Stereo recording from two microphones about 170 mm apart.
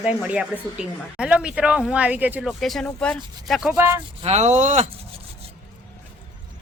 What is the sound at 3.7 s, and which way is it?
Speech, 15° right (ahead or behind).